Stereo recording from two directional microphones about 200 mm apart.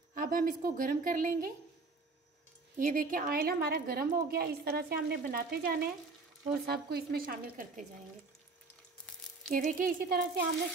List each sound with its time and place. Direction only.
0.1 s a woman's voice: 45° right (ahead or behind)
2.8 s a woman's voice: 45° right (ahead or behind)
9.5 s a woman's voice: 40° right (ahead or behind)